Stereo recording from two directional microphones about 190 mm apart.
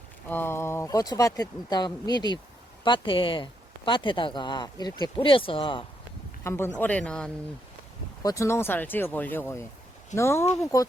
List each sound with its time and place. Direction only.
0.3 s speech: 10° left (ahead or behind); by 5.8 s 25° left (ahead or behind)
6.4 s speech: 15° left (ahead or behind)
8.2 s speech: 15° left (ahead or behind)